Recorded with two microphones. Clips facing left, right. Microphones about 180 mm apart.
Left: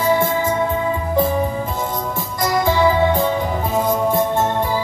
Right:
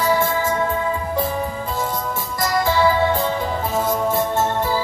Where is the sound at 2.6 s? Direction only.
15° left (ahead or behind).